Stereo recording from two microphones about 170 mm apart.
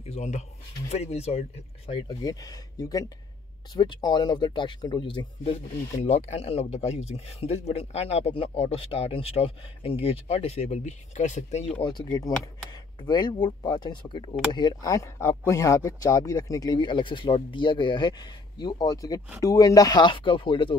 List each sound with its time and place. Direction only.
0.0 s speech: 40° left (ahead or behind)
5.9 s speech: 40° left (ahead or behind)